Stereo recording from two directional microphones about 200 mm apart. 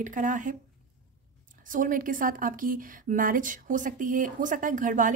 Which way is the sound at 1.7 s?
45° right (ahead or behind).